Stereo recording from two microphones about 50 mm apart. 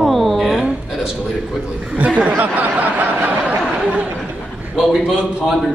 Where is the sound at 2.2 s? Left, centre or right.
Right.